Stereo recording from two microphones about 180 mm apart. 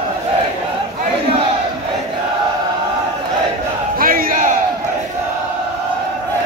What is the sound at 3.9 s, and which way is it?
Battle cry, 50° right (ahead or behind).